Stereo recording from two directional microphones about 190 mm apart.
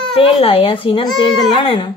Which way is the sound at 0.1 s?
30° left (ahead or behind).